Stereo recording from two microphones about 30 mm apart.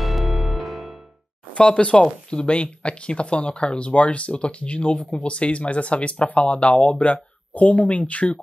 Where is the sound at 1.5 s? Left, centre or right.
Left.